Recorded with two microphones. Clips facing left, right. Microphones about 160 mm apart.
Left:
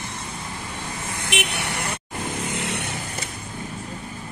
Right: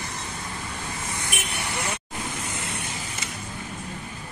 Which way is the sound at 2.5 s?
70° left (ahead or behind).